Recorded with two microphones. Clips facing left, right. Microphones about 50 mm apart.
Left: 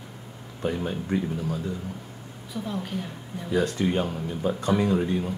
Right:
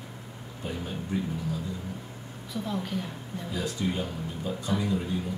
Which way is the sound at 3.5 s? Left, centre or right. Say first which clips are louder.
Left 7 dB; left.